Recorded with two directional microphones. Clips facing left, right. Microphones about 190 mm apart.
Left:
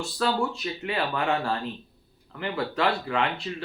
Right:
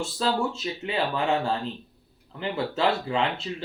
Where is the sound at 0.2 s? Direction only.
25° right (ahead or behind).